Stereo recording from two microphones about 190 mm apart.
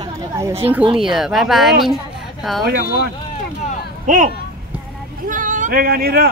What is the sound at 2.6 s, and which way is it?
Speech, 55° right (ahead or behind).